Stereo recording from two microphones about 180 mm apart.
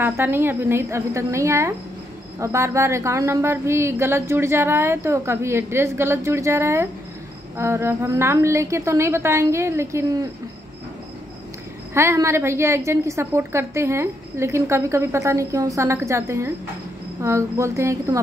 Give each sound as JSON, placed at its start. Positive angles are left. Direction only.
{"t": 0.0, "sound": "a woman's voice", "side_deg": -10}
{"t": 11.9, "sound": "a woman's voice", "side_deg": -15}